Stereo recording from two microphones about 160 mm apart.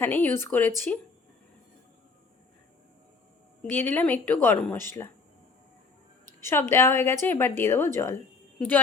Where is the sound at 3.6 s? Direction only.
10° left (ahead or behind).